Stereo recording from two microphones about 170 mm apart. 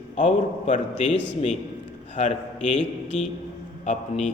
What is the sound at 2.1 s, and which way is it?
Speech, 40° left (ahead or behind).